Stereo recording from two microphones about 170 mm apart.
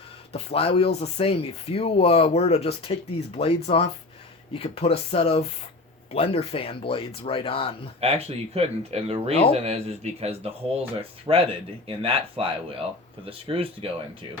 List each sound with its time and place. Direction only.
0.3 s speech: 35° left (ahead or behind)
8.0 s speech: 35° right (ahead or behind)
11.3 s speech: 25° right (ahead or behind)